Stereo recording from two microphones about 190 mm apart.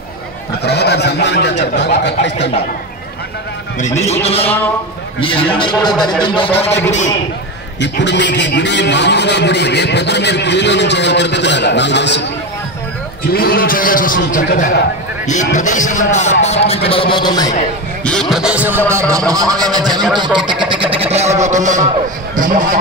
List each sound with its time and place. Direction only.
0.7 s speech: 60° left (ahead or behind)
3.8 s speech: 35° left (ahead or behind)
7.8 s a man's voice: 65° left (ahead or behind)
13.2 s a man's voice: 50° left (ahead or behind); by 17.6 s 20° left (ahead or behind)
18.0 s a man's voice: 5° left (ahead or behind); by 22.8 s 45° right (ahead or behind)